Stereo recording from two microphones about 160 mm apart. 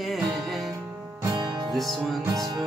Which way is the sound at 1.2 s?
25° right (ahead or behind).